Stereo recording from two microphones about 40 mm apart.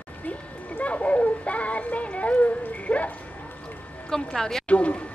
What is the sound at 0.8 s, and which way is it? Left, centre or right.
Music, left.